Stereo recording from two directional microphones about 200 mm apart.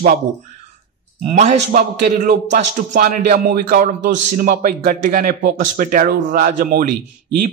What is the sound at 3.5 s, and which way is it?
A man's voice, 50° right (ahead or behind).